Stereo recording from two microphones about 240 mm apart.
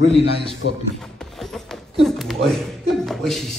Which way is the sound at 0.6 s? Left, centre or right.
Left.